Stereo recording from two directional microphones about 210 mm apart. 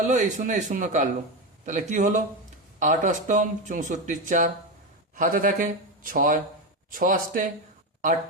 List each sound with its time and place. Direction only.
0.0 s speech: 35° right (ahead or behind)